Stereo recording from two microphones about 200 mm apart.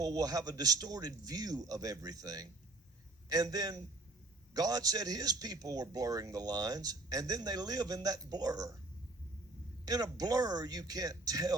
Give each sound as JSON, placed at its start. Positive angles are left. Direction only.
{"t": 0.0, "sound": "speech", "side_deg": -20}
{"t": 9.8, "sound": "speech", "side_deg": -20}